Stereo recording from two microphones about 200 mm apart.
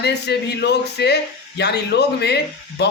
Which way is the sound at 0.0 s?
55° left (ahead or behind).